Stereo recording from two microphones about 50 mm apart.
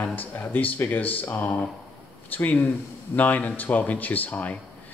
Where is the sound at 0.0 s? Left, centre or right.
Left.